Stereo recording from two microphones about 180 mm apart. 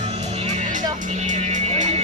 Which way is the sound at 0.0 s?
35° right (ahead or behind).